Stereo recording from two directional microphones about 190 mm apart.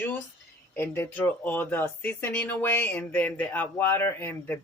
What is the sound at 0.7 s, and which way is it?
Speech, 10° left (ahead or behind).